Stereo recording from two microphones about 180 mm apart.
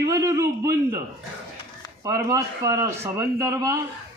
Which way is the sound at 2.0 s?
15° right (ahead or behind).